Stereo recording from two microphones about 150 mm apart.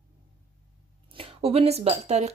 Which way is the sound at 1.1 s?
40° right (ahead or behind).